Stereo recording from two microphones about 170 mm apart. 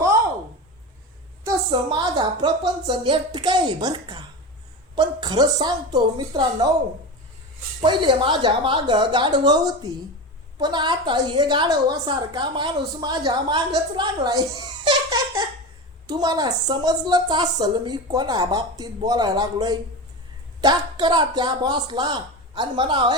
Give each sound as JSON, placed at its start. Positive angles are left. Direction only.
{"t": 1.5, "sound": "a woman's voice", "side_deg": -25}
{"t": 7.8, "sound": "a woman's voice", "side_deg": -30}
{"t": 14.8, "sound": "giggle", "side_deg": -20}
{"t": 16.0, "sound": "a woman's voice", "side_deg": -25}